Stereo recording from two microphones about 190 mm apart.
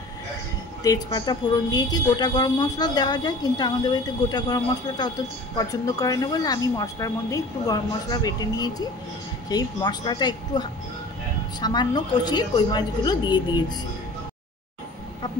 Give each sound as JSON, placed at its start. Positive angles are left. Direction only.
{"t": 0.8, "sound": "a woman's voice", "side_deg": 20}